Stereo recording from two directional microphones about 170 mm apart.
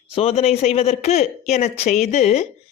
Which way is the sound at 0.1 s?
35° left (ahead or behind).